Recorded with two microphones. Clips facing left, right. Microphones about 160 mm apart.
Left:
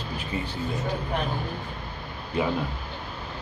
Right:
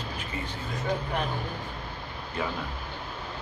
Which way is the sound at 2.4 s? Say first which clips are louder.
Left 6 dB; 15° left (ahead or behind).